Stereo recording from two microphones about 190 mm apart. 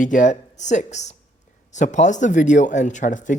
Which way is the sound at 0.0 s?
40° left (ahead or behind).